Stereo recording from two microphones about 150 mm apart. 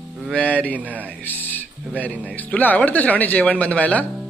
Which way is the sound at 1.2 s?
10° left (ahead or behind).